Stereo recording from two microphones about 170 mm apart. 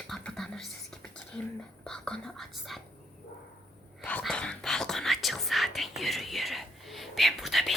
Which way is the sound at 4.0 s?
10° left (ahead or behind).